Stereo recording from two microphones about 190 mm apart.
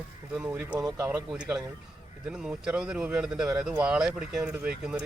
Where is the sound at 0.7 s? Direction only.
20° right (ahead or behind).